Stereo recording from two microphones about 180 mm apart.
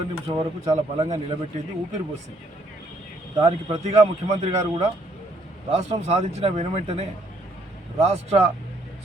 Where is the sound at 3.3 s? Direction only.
30° right (ahead or behind).